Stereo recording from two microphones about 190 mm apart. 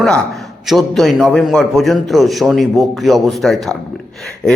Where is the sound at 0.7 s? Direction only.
Centre (ahead or behind).